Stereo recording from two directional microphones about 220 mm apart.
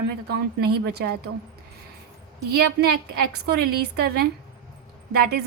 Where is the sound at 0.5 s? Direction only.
45° right (ahead or behind).